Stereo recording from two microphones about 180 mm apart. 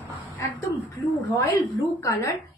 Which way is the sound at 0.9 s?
15° left (ahead or behind).